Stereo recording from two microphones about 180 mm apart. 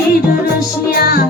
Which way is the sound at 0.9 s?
60° left (ahead or behind).